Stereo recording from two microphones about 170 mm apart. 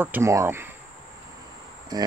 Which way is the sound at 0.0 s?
15° right (ahead or behind).